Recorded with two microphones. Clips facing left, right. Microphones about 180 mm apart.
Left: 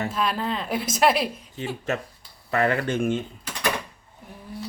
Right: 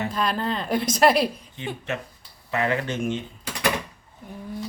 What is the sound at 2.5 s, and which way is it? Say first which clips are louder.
Speech: left 2 dB; 50° left (ahead or behind).